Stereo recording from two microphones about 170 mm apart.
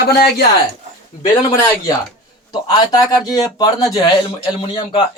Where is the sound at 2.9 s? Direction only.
20° left (ahead or behind).